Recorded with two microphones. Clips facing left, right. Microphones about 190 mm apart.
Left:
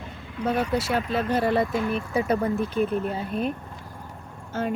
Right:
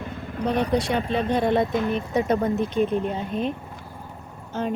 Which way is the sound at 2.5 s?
25° right (ahead or behind).